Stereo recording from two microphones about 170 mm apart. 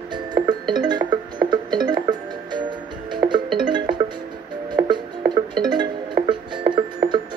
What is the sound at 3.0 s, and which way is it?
Music, 25° right (ahead or behind).